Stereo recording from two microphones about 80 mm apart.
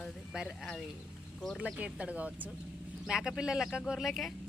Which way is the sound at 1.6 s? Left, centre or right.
Centre.